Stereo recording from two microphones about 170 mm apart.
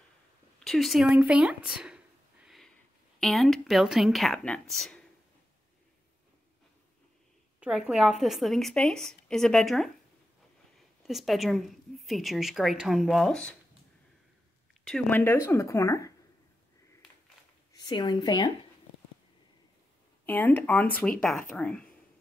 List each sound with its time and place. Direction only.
0.7 s a woman's voice: centre (ahead or behind)
2.4 s a sound: centre (ahead or behind)
3.2 s a woman's voice: centre (ahead or behind)
7.6 s a woman's voice: 5° right (ahead or behind)
11.0 s a woman's voice: centre (ahead or behind)
14.9 s speech: 5° left (ahead or behind)
17.7 s a woman's voice: 25° left (ahead or behind)
20.2 s a woman's voice: 10° left (ahead or behind)